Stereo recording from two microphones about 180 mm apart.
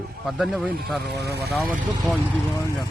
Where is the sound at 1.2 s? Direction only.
65° right (ahead or behind).